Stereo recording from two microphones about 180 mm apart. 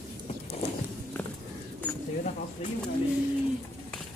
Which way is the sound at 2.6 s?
30° left (ahead or behind).